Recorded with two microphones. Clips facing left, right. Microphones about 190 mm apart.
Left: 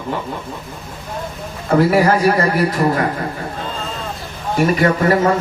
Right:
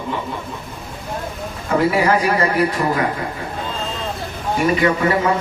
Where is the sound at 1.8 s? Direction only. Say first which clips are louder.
Left 3 dB; 40° left (ahead or behind).